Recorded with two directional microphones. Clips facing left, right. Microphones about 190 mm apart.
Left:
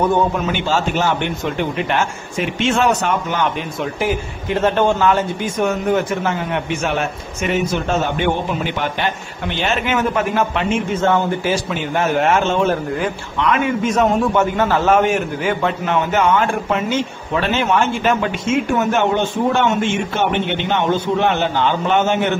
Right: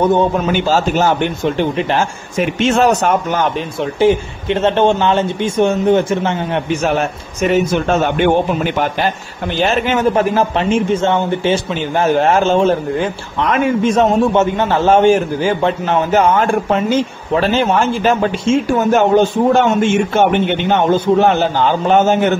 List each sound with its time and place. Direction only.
0.5 s a man's voice: 40° right (ahead or behind)
4.0 s speech: 25° right (ahead or behind)
6.8 s a man's voice: 40° right (ahead or behind)
9.6 s a man's voice: 35° right (ahead or behind)
13.4 s a man's voice: 40° right (ahead or behind)